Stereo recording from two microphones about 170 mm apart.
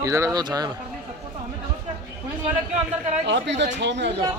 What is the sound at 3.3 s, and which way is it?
Speech, 90° right.